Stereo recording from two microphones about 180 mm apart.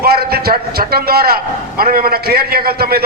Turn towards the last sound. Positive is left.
turn(degrees=-60)  # may be behind; listen again after turning